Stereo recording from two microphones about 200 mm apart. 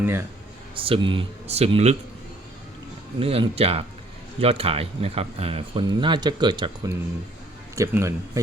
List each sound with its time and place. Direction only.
0.0 s speech: 10° right (ahead or behind)
0.8 s speech: 25° right (ahead or behind)
3.2 s speech: 30° right (ahead or behind)